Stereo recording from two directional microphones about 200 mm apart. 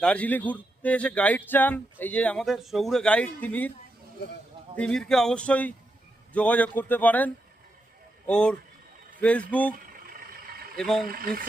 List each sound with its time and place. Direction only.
0.0 s speech: 5° left (ahead or behind)
4.8 s speech: 5° left (ahead or behind)
8.3 s speech: 5° left (ahead or behind)
9.7 s vehicle: 45° right (ahead or behind)
10.8 s speech: centre (ahead or behind)
11.1 s speech: 45° right (ahead or behind)